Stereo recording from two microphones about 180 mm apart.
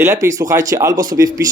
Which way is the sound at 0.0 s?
15° right (ahead or behind).